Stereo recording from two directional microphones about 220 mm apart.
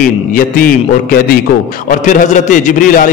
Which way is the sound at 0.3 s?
40° left (ahead or behind).